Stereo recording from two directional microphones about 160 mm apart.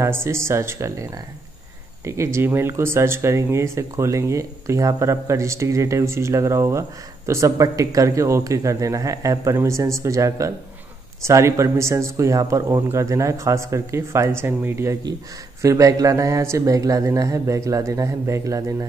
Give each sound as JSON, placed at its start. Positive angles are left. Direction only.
{"t": 0.0, "sound": "speech", "side_deg": -15}